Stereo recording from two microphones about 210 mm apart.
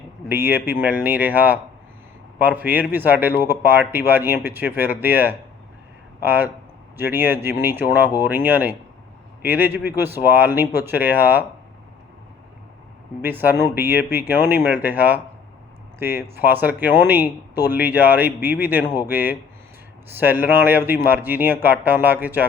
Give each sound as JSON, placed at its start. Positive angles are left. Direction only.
{"t": 0.3, "sound": "a man's voice", "side_deg": -10}
{"t": 13.2, "sound": "a man's voice", "side_deg": -10}